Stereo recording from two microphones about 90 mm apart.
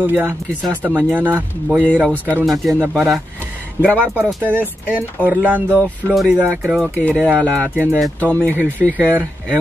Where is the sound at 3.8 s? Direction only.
35° left (ahead or behind).